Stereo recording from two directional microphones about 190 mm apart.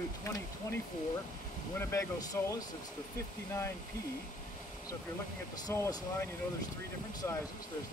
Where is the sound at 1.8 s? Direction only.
15° left (ahead or behind).